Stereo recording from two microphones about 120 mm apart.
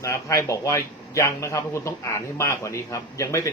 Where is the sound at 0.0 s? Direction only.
25° left (ahead or behind).